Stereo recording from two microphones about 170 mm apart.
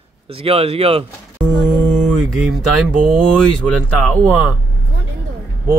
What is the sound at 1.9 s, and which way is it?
Speech, 5° right (ahead or behind).